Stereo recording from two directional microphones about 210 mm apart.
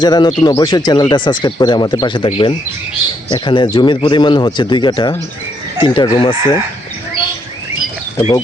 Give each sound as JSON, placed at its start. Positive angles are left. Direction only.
{"t": 0.0, "sound": "speech", "side_deg": 20}